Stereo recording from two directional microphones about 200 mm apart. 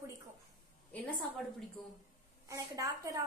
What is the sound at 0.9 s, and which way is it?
Speech, 5° left (ahead or behind).